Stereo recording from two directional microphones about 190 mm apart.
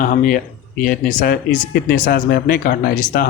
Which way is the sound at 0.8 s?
50° left (ahead or behind).